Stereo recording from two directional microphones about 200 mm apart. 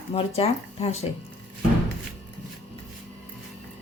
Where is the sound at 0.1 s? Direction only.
30° left (ahead or behind).